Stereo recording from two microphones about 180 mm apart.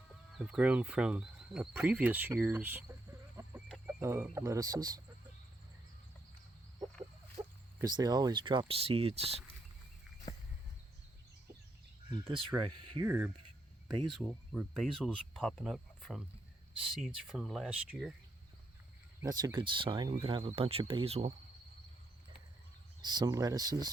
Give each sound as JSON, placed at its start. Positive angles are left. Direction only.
{"t": 0.3, "sound": "speech", "side_deg": -5}
{"t": 7.4, "sound": "chicken", "side_deg": -20}
{"t": 7.8, "sound": "speech", "side_deg": -20}
{"t": 12.5, "sound": "speech", "side_deg": -5}
{"t": 19.2, "sound": "speech", "side_deg": -20}
{"t": 23.0, "sound": "speech", "side_deg": -20}